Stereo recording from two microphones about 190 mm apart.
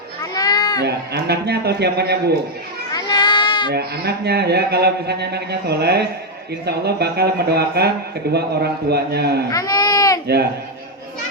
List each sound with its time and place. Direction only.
0.2 s a sound: 20° left (ahead or behind)
0.9 s speech: 60° right (ahead or behind)
2.9 s child singing: 20° left (ahead or behind)
3.7 s speech: 60° right (ahead or behind)
9.5 s baby cry: 20° left (ahead or behind)